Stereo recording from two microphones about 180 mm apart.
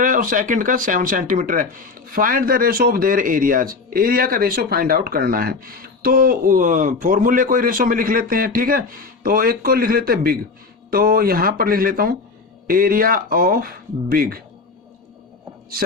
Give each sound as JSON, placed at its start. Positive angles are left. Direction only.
{"t": 0.0, "sound": "speech", "side_deg": -50}